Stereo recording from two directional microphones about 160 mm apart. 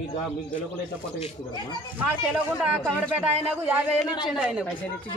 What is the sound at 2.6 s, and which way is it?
Speech, 5° right (ahead or behind).